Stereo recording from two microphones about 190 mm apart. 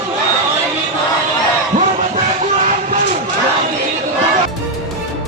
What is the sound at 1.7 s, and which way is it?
Music, 40° right (ahead or behind).